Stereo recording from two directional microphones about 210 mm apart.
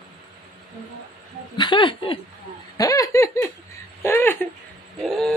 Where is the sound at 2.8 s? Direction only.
15° left (ahead or behind).